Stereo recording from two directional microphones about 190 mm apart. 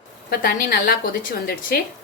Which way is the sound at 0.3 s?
50° left (ahead or behind).